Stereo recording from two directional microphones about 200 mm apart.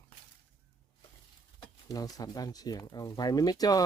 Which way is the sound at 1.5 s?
20° left (ahead or behind).